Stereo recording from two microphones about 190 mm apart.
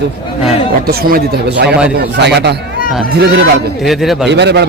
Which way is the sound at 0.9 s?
50° right (ahead or behind).